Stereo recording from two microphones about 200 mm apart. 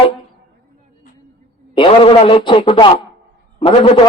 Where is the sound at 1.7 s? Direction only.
25° left (ahead or behind).